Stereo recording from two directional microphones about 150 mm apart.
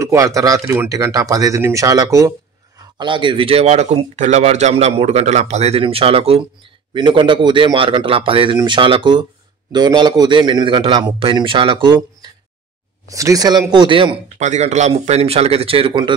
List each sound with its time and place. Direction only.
0.0 s speech: 20° right (ahead or behind)
3.0 s a man's voice: 30° right (ahead or behind)
14.4 s speech: 50° right (ahead or behind); by 16.2 s 30° right (ahead or behind)